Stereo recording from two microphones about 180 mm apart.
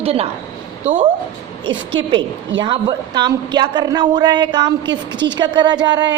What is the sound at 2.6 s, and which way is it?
A woman's voice, 25° right (ahead or behind).